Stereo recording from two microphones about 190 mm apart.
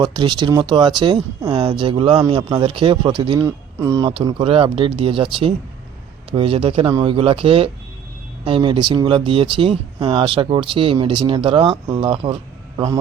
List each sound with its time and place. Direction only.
0.0 s speech: 25° right (ahead or behind)